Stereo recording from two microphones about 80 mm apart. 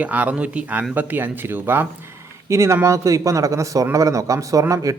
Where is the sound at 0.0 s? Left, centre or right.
Centre.